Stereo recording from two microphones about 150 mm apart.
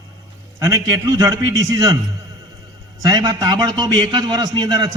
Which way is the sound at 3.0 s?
25° right (ahead or behind).